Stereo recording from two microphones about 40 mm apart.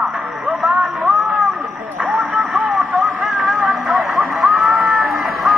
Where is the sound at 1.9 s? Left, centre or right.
Right.